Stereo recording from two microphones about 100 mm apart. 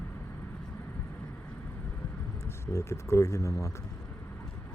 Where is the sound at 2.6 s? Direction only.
30° left (ahead or behind).